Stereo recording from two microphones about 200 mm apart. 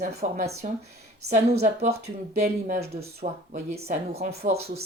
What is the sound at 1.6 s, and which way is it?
Speech, 35° right (ahead or behind).